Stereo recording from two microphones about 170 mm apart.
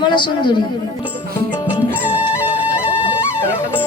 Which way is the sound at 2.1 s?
10° right (ahead or behind).